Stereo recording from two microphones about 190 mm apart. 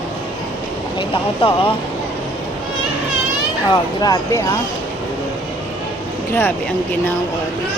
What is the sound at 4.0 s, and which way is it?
Speech, 20° left (ahead or behind).